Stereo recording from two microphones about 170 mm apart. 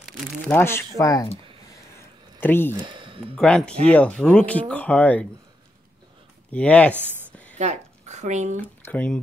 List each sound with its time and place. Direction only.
0.5 s speech: 15° left (ahead or behind)
1.7 s a sound: 15° left (ahead or behind)
2.8 s speech: 30° right (ahead or behind)
3.3 s a man's voice: 5° left (ahead or behind)
6.5 s speech: 10° left (ahead or behind)
7.5 s speech: 45° right (ahead or behind)
8.5 s speech: 10° left (ahead or behind)